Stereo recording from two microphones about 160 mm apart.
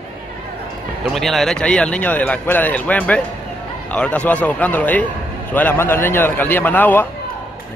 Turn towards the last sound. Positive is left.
turn(degrees=10)  # may be behind; listen again after turning